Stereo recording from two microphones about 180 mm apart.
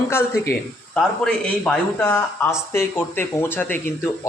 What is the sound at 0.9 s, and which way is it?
A man's voice, 5° left (ahead or behind).